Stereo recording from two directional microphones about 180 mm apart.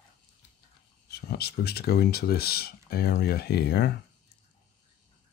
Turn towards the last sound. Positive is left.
turn(degrees=65)  # may be behind; listen again after turning